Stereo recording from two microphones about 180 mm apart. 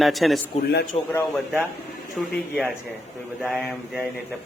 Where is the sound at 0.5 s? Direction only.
35° left (ahead or behind).